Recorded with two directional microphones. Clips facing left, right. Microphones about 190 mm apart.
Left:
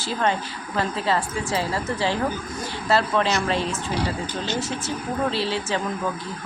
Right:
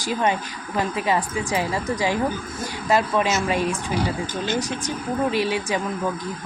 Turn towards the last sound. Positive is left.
turn(degrees=-15)  # may be behind; listen again after turning